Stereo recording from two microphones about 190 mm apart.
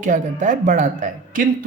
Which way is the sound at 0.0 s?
40° right (ahead or behind).